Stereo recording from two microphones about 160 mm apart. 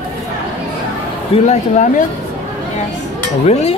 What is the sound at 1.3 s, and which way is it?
Speech, 45° left (ahead or behind).